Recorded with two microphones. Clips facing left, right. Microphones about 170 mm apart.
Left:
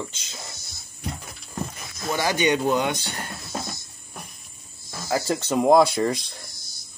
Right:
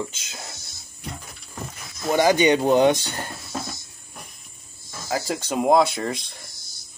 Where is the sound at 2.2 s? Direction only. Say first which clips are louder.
Right 7 dB; 15° right (ahead or behind).